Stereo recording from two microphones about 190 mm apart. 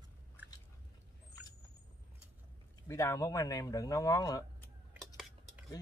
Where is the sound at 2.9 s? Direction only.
15° left (ahead or behind).